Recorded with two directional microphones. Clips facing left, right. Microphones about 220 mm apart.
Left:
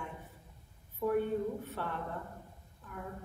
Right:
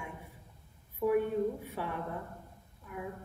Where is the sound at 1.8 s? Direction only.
10° right (ahead or behind).